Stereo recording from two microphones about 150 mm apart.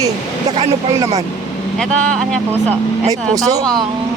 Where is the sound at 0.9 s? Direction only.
20° right (ahead or behind).